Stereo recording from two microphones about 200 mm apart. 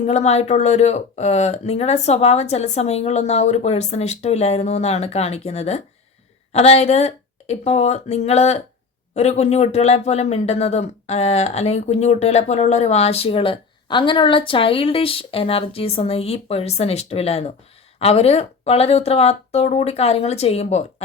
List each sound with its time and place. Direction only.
0.0 s speech: 35° left (ahead or behind)